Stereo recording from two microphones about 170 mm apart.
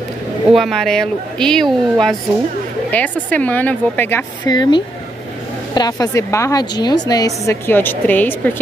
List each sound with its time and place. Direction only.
0.5 s speech: centre (ahead or behind)
4.6 s a woman's voice: 30° left (ahead or behind); by 8.4 s 10° left (ahead or behind)